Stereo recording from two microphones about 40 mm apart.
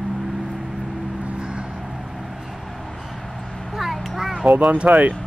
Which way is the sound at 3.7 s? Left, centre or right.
Centre.